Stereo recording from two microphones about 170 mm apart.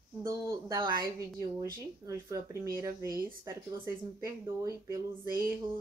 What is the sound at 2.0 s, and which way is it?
Speech, 20° right (ahead or behind).